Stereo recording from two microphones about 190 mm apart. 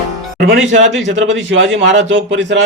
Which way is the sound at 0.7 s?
75° right (ahead or behind).